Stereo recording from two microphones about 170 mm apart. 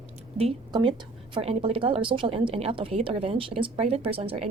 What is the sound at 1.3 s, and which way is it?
A woman's voice, 35° right (ahead or behind).